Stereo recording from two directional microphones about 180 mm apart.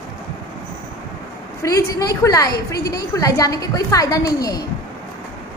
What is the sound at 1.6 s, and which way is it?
A woman's voice, 15° left (ahead or behind).